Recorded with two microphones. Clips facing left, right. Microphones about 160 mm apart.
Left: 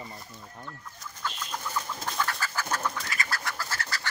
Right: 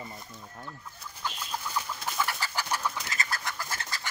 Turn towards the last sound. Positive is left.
turn(degrees=-20)  # may be behind; listen again after turning